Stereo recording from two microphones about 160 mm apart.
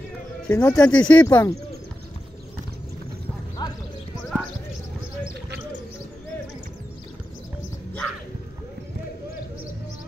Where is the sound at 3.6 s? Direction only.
25° left (ahead or behind).